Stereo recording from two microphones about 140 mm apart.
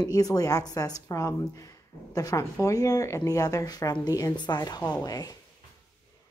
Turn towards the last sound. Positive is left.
turn(degrees=25)  # may be behind; listen again after turning